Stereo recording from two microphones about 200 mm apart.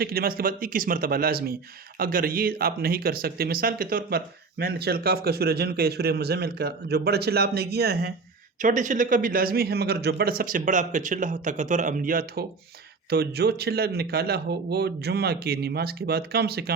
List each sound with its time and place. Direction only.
0.0 s speech: 50° right (ahead or behind)
8.6 s speech: 40° right (ahead or behind)